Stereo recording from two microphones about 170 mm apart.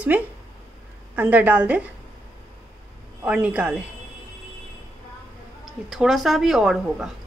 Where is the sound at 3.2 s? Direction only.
10° right (ahead or behind).